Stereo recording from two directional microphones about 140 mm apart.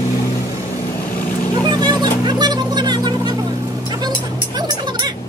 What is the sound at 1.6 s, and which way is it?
Vehicle, 30° right (ahead or behind).